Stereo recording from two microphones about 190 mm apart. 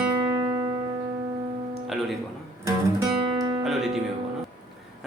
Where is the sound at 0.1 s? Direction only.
15° right (ahead or behind).